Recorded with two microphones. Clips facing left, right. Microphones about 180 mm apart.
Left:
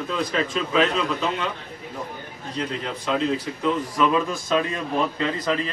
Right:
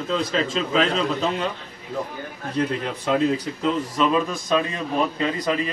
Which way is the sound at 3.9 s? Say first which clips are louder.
Even; 20° right (ahead or behind).